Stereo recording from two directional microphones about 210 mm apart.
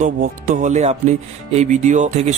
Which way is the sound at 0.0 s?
35° right (ahead or behind).